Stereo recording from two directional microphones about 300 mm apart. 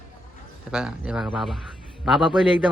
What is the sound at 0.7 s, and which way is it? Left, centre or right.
Speech, centre.